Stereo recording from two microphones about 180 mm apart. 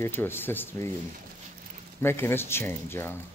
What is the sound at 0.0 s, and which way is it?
Speech, 10° left (ahead or behind).